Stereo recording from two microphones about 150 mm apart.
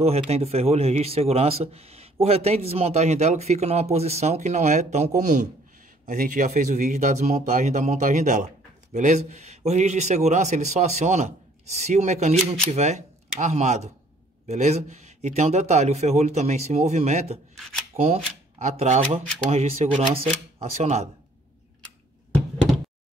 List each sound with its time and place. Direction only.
0.0 s speech: 45° right (ahead or behind)